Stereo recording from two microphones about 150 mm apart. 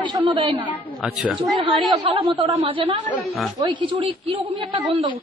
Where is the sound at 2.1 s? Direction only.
40° right (ahead or behind).